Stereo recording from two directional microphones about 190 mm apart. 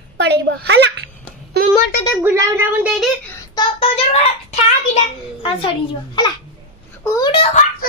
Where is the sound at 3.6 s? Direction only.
30° left (ahead or behind).